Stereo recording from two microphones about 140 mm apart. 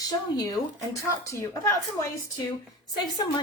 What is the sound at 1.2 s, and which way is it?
A woman's voice, 20° left (ahead or behind).